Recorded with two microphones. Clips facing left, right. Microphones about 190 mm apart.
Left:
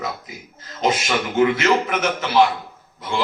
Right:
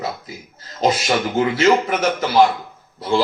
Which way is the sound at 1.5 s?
35° right (ahead or behind).